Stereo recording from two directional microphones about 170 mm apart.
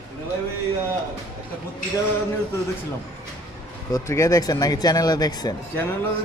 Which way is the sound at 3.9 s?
20° left (ahead or behind).